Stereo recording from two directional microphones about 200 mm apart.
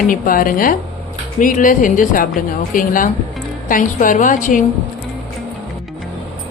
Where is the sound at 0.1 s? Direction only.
45° left (ahead or behind).